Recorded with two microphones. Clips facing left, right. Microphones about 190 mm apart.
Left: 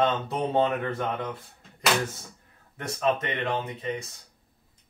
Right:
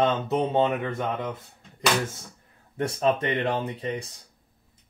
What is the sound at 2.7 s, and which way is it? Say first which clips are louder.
Speech: right 3 dB; 30° right (ahead or behind).